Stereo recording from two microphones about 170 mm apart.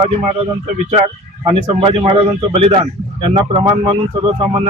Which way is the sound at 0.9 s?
35° right (ahead or behind).